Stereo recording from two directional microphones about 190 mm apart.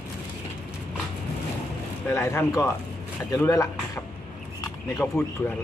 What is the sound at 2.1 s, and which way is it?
Speech, 15° left (ahead or behind).